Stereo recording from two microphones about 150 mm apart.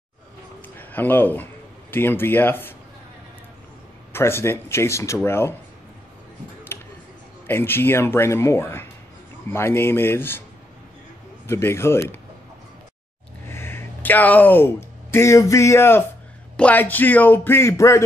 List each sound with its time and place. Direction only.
0.7 s a man's voice: 10° left (ahead or behind)
4.1 s speech: 15° left (ahead or behind)
6.7 s tick-tock: 15° left (ahead or behind)
7.4 s speech: 15° left (ahead or behind)
11.4 s speech: 15° left (ahead or behind)
13.5 s speech: 15° left (ahead or behind)